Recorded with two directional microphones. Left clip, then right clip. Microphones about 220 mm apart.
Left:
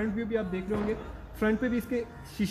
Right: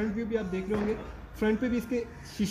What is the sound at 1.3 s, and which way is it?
Speech, centre (ahead or behind).